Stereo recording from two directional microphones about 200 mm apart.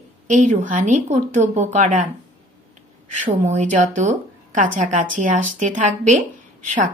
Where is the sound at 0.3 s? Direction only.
40° right (ahead or behind).